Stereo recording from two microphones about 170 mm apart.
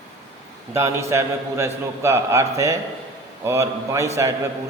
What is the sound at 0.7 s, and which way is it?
A man's voice, 15° right (ahead or behind).